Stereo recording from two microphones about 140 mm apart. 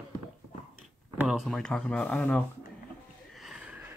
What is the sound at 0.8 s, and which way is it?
Speech, 5° right (ahead or behind).